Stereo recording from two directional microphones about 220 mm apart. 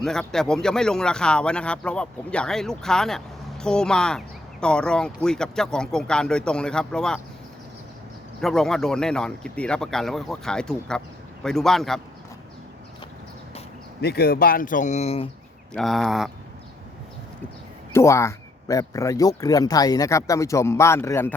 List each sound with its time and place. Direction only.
0.0 s speech: 5° left (ahead or behind)
8.4 s speech: centre (ahead or behind)
14.0 s speech: 45° left (ahead or behind); by 15.3 s 30° left (ahead or behind)
15.7 s speech: centre (ahead or behind)
17.9 s a man's voice: 15° left (ahead or behind)